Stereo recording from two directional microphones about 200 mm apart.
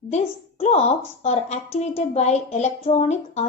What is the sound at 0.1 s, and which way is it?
A woman's voice, 35° left (ahead or behind).